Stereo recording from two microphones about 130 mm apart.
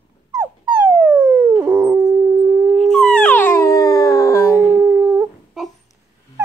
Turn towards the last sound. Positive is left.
turn(degrees=-15)  # may be behind; listen again after turning